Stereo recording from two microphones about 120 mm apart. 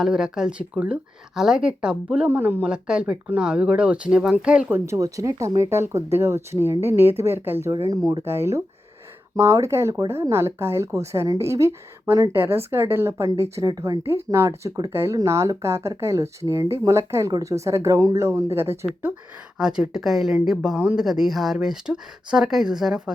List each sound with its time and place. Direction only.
0.0 s speech: 5° right (ahead or behind)
4.9 s speech: 25° right (ahead or behind)
14.0 s speech: 25° right (ahead or behind)
19.5 s speech: 5° right (ahead or behind)